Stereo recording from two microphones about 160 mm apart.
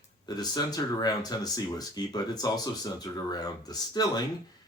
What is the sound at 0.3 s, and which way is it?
Speech, 25° left (ahead or behind).